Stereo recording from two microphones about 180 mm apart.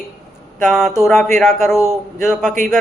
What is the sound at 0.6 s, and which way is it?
Speech, centre (ahead or behind).